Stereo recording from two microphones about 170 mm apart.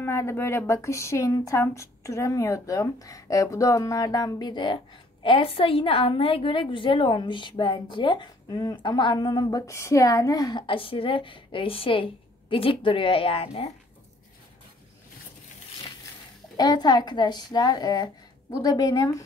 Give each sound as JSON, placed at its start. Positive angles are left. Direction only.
{"t": 0.0, "sound": "a woman's voice", "side_deg": 15}
{"t": 16.5, "sound": "a woman's voice", "side_deg": 25}